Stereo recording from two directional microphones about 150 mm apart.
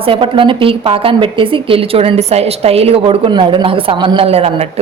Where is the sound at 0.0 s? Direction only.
35° right (ahead or behind).